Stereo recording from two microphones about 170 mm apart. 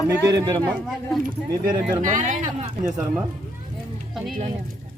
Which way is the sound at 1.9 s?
45° right (ahead or behind).